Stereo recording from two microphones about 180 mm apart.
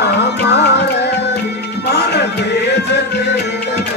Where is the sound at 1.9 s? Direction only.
65° left (ahead or behind).